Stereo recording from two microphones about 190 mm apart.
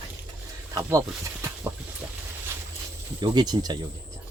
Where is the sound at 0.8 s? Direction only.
15° right (ahead or behind).